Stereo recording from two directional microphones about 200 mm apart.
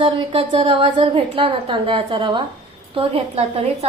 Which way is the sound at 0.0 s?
25° right (ahead or behind).